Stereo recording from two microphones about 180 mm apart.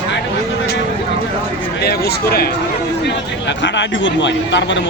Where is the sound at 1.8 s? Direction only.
60° left (ahead or behind).